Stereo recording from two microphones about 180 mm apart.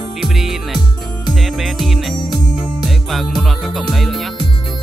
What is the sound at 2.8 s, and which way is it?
Music, centre (ahead or behind).